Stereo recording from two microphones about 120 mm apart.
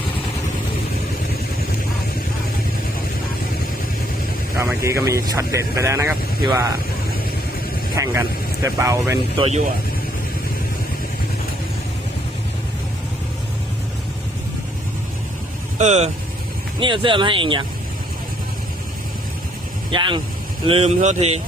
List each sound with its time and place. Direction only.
4.5 s speech: 25° right (ahead or behind)
7.9 s speech: 25° right (ahead or behind)
15.8 s speech: 70° right (ahead or behind)
16.8 s speech: 40° right (ahead or behind)
19.9 s speech: 40° right (ahead or behind)
20.7 s speech: 60° right (ahead or behind)